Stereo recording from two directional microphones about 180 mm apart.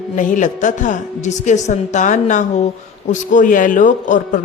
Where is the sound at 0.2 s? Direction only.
45° left (ahead or behind).